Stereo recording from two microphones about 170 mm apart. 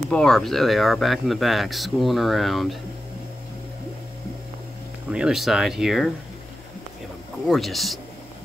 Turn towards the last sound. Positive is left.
turn(degrees=0)  # may be behind; listen again after turning